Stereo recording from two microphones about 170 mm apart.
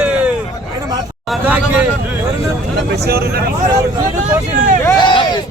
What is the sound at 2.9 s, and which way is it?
Speech, 70° right (ahead or behind).